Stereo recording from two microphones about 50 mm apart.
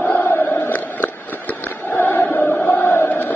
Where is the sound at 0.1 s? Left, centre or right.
Left.